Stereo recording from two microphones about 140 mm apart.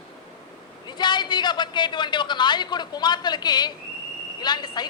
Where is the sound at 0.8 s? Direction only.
30° left (ahead or behind).